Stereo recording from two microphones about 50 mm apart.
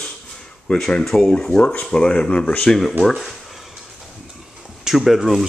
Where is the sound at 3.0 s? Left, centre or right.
Centre.